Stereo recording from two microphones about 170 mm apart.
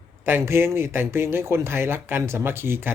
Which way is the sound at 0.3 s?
15° right (ahead or behind).